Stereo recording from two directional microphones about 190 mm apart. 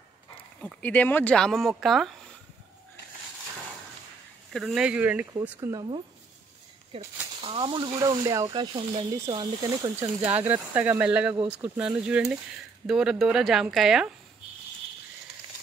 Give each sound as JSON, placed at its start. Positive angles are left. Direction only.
{"t": 0.6, "sound": "speech", "side_deg": 5}
{"t": 4.5, "sound": "speech", "side_deg": 0}
{"t": 9.9, "sound": "speech", "side_deg": -10}